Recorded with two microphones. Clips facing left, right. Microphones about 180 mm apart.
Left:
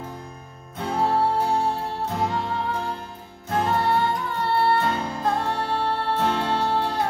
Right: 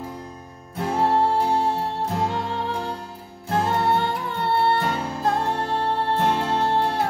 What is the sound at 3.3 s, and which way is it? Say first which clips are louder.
Music: right 1 dB; 30° right (ahead or behind).